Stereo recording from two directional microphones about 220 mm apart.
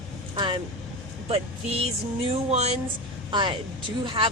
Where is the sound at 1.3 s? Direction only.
25° right (ahead or behind).